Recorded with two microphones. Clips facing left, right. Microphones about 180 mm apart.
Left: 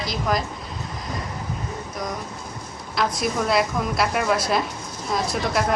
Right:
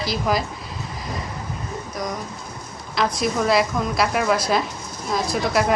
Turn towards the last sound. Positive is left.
turn(degrees=0)  # may be behind; listen again after turning